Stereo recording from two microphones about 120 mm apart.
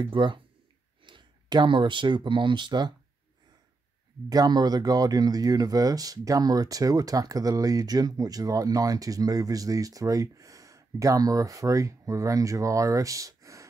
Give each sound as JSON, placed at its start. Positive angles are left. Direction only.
{"t": 0.0, "sound": "speech", "side_deg": -40}
{"t": 4.3, "sound": "speech", "side_deg": -35}